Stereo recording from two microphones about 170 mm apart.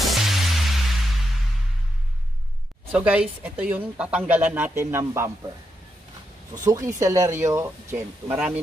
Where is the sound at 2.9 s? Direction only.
5° right (ahead or behind).